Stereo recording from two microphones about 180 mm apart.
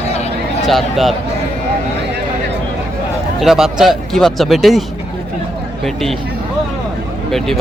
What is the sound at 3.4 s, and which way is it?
Speech, centre (ahead or behind).